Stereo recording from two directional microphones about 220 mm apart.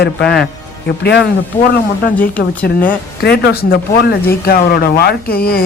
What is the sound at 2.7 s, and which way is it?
Speech, 45° left (ahead or behind).